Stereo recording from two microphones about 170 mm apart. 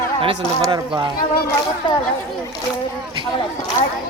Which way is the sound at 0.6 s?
20° right (ahead or behind).